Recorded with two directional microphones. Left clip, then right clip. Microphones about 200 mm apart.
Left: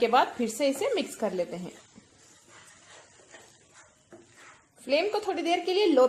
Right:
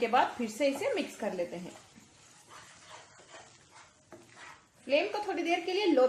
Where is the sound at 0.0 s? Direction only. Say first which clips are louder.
Left 4 dB; 35° left (ahead or behind).